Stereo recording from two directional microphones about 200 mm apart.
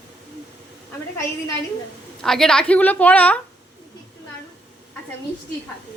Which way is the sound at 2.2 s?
Centre (ahead or behind).